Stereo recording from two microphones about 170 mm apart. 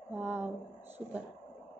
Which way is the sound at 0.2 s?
10° right (ahead or behind).